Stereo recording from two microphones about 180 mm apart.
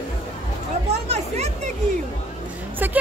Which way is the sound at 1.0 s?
35° right (ahead or behind).